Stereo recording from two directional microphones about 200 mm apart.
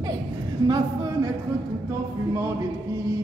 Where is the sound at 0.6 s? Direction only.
20° right (ahead or behind).